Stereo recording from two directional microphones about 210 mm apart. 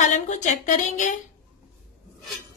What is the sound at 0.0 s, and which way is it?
A woman's voice, 35° left (ahead or behind).